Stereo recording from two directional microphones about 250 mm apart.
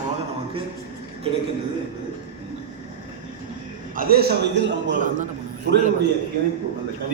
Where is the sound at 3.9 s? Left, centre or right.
Right.